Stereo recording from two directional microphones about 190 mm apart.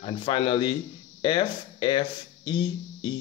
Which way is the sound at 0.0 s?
25° left (ahead or behind).